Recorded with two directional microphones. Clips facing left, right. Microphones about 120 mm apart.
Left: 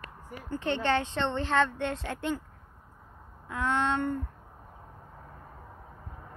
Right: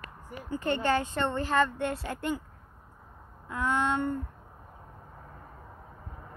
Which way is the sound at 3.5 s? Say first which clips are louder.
Even; 5° right (ahead or behind).